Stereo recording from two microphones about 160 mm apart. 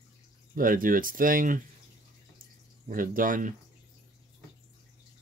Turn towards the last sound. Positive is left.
turn(degrees=-60)  # may be behind; listen again after turning